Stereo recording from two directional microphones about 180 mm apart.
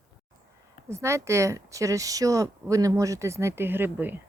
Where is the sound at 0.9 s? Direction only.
15° right (ahead or behind).